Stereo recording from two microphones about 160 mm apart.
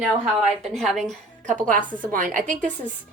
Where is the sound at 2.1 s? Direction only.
55° right (ahead or behind).